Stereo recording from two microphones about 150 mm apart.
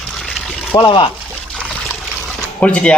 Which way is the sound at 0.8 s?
30° left (ahead or behind).